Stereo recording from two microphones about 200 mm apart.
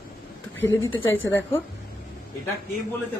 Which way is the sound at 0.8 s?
75° left (ahead or behind).